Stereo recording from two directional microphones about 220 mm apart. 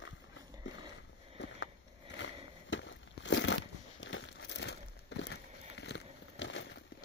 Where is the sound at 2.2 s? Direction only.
55° left (ahead or behind).